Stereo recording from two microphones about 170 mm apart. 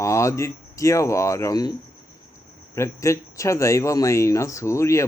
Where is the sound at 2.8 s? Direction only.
15° left (ahead or behind).